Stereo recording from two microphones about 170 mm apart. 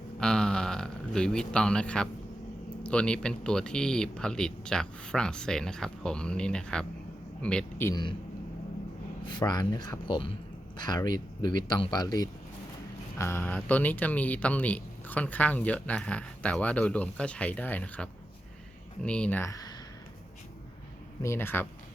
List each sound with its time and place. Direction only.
0.2 s a sound: 5° left (ahead or behind)
2.8 s speech: 5° left (ahead or behind)
9.2 s speech: 25° left (ahead or behind)
21.2 s speech: 15° left (ahead or behind)